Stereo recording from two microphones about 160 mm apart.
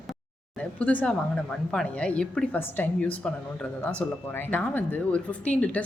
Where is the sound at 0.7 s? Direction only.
10° left (ahead or behind).